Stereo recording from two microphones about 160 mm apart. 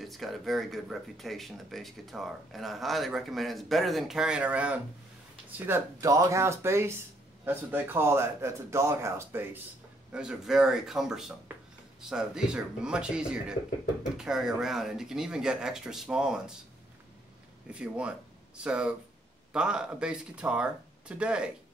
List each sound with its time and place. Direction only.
0.0 s a man's voice: centre (ahead or behind)
17.6 s a man's voice: 5° right (ahead or behind)